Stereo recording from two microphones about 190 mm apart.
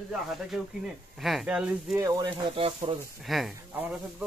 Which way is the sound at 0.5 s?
Centre (ahead or behind).